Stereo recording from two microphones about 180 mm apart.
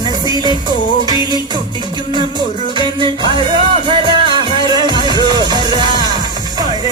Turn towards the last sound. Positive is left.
turn(degrees=-25)  # may be behind; listen again after turning